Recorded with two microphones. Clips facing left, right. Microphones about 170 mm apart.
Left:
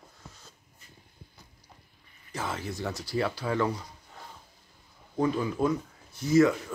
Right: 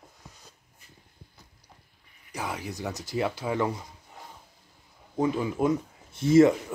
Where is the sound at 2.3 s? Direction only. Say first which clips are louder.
Even; 15° right (ahead or behind).